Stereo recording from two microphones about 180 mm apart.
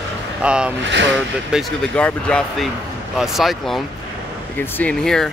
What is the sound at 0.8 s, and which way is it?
Speech, 85° right.